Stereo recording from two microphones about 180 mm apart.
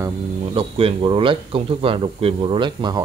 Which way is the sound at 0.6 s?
30° right (ahead or behind).